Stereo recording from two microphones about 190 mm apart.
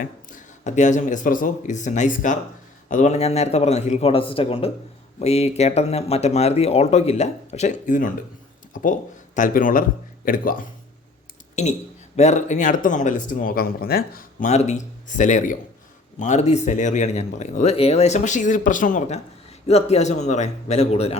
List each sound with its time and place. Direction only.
0.0 s speech: 45° left (ahead or behind)